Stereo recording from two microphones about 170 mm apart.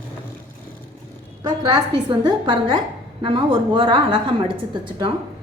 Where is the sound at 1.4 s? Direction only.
20° right (ahead or behind).